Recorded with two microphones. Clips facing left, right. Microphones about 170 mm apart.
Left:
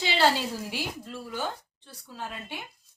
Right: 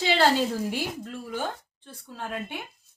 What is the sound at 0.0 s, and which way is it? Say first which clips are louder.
Speech: right 3 dB; 50° right (ahead or behind).